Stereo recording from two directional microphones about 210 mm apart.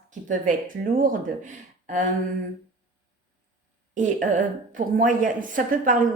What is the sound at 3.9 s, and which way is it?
A woman's voice, 35° right (ahead or behind).